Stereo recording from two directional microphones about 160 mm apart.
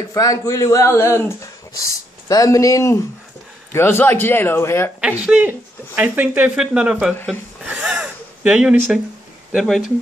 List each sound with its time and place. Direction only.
0.1 s a man's voice: 20° left (ahead or behind)
5.0 s speech: 5° right (ahead or behind)
7.6 s gasp: 5° right (ahead or behind)
9.5 s speech: centre (ahead or behind)